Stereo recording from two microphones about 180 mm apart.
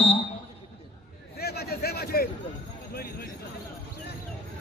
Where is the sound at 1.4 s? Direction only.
60° left (ahead or behind).